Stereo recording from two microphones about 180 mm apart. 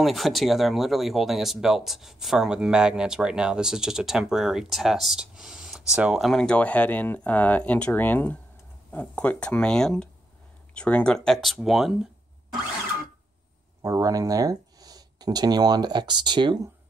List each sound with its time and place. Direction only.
0.0 s speech: centre (ahead or behind)
13.8 s speech: 20° right (ahead or behind)